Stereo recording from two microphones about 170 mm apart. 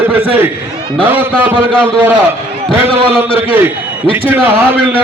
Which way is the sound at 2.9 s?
30° right (ahead or behind).